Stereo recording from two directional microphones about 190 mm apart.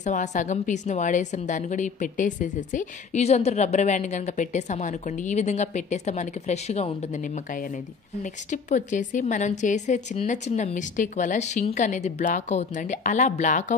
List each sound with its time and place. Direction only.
0.0 s a woman's voice: 40° left (ahead or behind)
8.5 s a woman's voice: 40° left (ahead or behind)